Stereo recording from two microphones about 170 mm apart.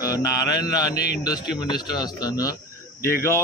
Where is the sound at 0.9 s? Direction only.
70° left (ahead or behind).